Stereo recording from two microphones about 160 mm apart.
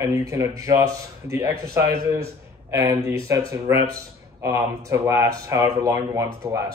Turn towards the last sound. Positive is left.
turn(degrees=-20)  # may be behind; listen again after turning